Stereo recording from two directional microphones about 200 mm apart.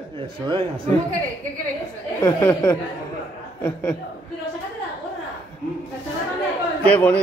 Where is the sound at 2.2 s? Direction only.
10° left (ahead or behind).